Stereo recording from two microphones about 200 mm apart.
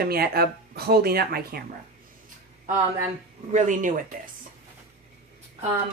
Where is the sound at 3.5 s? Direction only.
40° right (ahead or behind).